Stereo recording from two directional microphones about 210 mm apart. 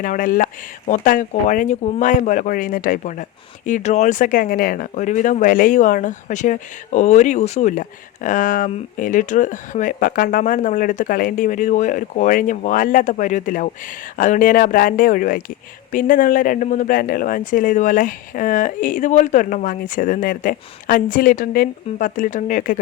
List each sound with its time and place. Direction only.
0.0 s speech: 40° left (ahead or behind)